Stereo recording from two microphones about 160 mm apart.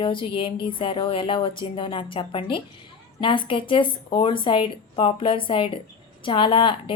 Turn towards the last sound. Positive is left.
turn(degrees=35)  # may be behind; listen again after turning